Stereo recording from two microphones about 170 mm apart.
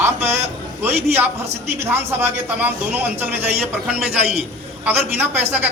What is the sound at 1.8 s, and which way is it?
A man's voice, 15° right (ahead or behind).